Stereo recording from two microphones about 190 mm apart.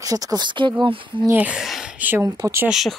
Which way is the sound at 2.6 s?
Centre (ahead or behind).